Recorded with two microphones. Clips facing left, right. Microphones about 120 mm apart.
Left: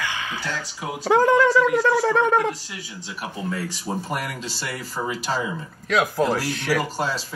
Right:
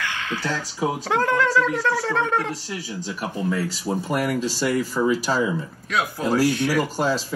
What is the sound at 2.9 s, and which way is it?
Speech, 40° right (ahead or behind).